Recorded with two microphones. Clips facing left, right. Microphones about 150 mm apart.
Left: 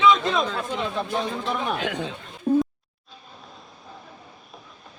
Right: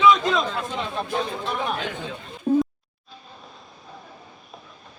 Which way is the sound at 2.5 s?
5° left (ahead or behind).